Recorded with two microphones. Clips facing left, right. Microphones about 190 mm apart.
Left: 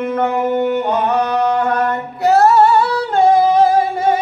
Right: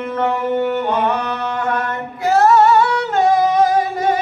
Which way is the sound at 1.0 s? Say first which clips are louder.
Left 5 dB; 40° left (ahead or behind).